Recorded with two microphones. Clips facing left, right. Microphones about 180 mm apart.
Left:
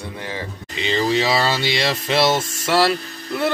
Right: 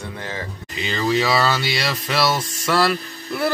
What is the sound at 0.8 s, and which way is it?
Speech, 25° left (ahead or behind).